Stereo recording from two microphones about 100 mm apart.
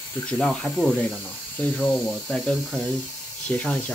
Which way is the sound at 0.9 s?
15° left (ahead or behind).